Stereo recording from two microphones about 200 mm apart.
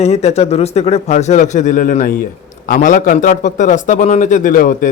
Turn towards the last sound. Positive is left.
turn(degrees=45)  # may be behind; listen again after turning